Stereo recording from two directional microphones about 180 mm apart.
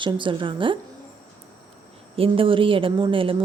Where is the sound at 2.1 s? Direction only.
30° right (ahead or behind).